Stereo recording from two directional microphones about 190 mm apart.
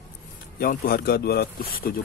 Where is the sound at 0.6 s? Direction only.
50° left (ahead or behind).